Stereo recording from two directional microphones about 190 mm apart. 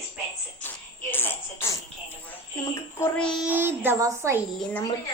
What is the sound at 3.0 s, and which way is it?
Speech, 5° left (ahead or behind).